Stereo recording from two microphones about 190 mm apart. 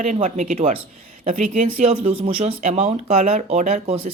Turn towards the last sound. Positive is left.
turn(degrees=-35)  # may be behind; listen again after turning